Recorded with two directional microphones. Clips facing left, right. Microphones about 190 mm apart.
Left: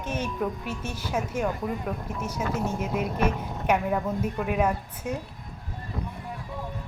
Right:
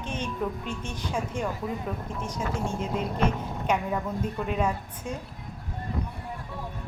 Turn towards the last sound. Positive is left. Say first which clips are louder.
# left 2 dB
turn(degrees=10)  # may be behind; listen again after turning